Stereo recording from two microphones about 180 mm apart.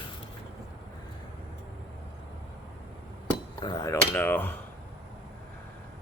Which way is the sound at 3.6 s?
20° left (ahead or behind).